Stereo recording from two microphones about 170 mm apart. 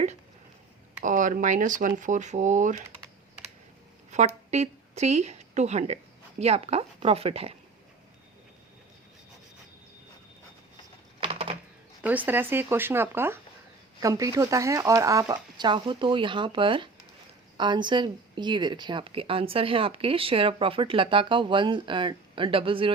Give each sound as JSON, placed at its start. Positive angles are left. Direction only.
{"t": 1.0, "sound": "speech", "side_deg": -50}
{"t": 4.1, "sound": "speech", "side_deg": -45}
{"t": 11.2, "sound": "typing", "side_deg": -35}
{"t": 12.0, "sound": "speech", "side_deg": -10}